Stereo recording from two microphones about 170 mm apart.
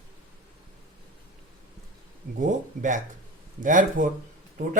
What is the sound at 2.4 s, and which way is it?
Speech, 50° right (ahead or behind).